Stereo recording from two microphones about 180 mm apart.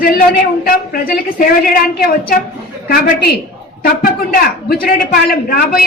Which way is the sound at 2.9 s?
50° left (ahead or behind).